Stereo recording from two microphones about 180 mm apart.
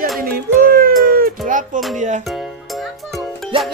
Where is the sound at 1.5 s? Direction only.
45° right (ahead or behind).